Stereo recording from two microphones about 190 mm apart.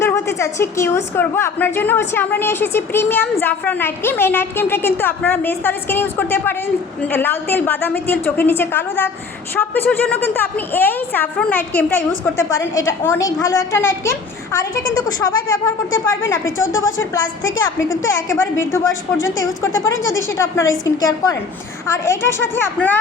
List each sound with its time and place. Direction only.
0.0 s a woman's voice: 15° left (ahead or behind)
17.8 s a woman's voice: 90° left
18.3 s a woman's voice: 15° left (ahead or behind)
20.3 s a woman's voice: 15° left (ahead or behind)